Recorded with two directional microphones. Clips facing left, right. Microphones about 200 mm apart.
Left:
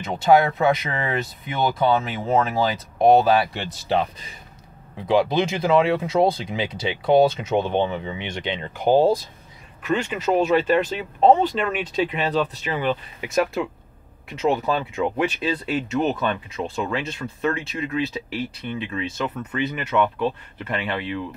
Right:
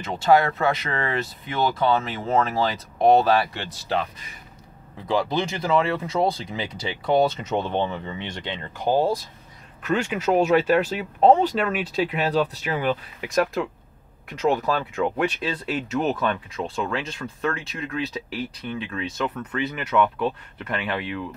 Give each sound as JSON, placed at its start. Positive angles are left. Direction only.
{"t": 0.1, "sound": "speech", "side_deg": 15}
{"t": 10.0, "sound": "speech", "side_deg": -10}